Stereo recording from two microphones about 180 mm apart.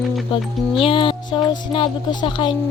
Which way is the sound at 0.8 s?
30° left (ahead or behind).